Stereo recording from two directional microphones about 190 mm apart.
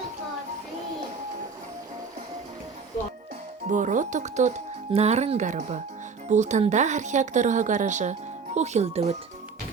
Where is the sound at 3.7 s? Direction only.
40° right (ahead or behind).